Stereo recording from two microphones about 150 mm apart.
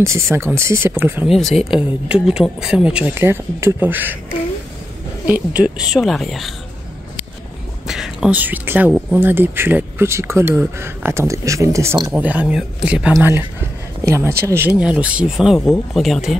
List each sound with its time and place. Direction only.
0.0 s speech: 20° right (ahead or behind)
1.3 s speech: centre (ahead or behind)
5.2 s a woman's voice: 10° right (ahead or behind)
7.8 s a woman's voice: 5° right (ahead or behind)